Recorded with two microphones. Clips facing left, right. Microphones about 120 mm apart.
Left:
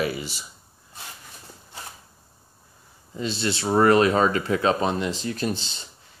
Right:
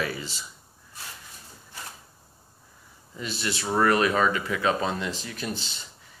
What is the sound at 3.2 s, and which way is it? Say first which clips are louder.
Speech: left 5 dB; 30° left (ahead or behind).